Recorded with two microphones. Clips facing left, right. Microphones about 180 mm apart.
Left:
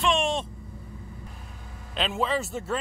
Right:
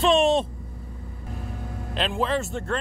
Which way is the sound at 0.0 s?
35° right (ahead or behind).